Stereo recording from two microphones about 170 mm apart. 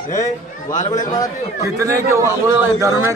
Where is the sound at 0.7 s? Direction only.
45° left (ahead or behind).